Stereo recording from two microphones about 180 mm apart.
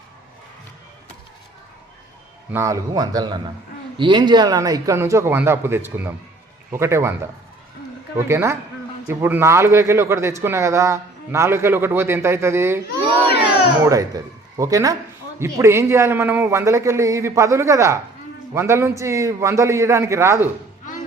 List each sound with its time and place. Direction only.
2.5 s a man's voice: 15° right (ahead or behind)
14.5 s a man's voice: 20° right (ahead or behind)